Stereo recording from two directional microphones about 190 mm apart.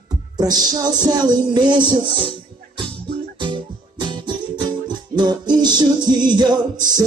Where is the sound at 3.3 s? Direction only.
25° right (ahead or behind).